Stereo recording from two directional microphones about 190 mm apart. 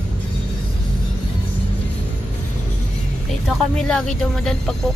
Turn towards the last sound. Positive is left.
turn(degrees=5)  # may be behind; listen again after turning